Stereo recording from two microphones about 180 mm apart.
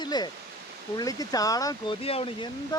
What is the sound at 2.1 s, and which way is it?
Speech, 30° left (ahead or behind).